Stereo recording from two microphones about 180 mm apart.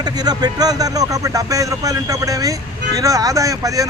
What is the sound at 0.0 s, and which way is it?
Speech, 20° right (ahead or behind).